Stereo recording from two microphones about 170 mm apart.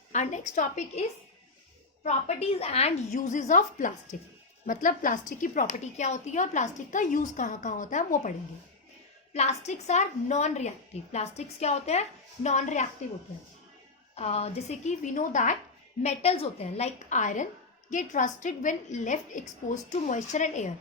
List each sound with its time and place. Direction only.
0.1 s a woman's voice: 45° left (ahead or behind)
2.0 s a woman's voice: 40° left (ahead or behind)
9.3 s a woman's voice: 40° left (ahead or behind)
14.2 s a woman's voice: 35° left (ahead or behind)
16.0 s a woman's voice: 35° left (ahead or behind)